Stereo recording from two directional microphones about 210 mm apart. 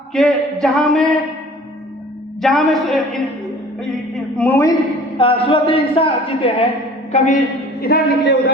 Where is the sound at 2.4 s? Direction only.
Centre (ahead or behind).